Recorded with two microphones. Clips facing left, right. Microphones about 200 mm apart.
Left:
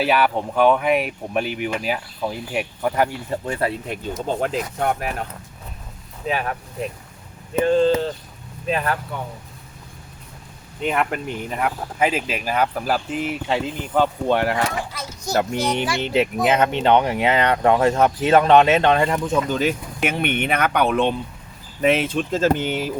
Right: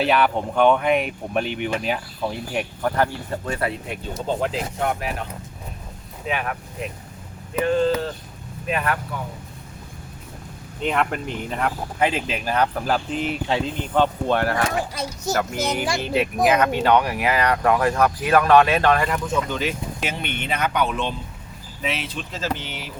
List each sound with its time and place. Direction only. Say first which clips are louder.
0.0 s speech: even; 5° left (ahead or behind)
4.4 s speech: left 1 dB; 50° left (ahead or behind)
6.2 s speech: left 2 dB; 35° left (ahead or behind)
10.8 s speech: left 1 dB; 5° left (ahead or behind)
15.5 s speech: left 2 dB; 5° right (ahead or behind)
16.0 s speech: left 1 dB; 25° left (ahead or behind)
19.5 s speech: left 4 dB; 45° left (ahead or behind)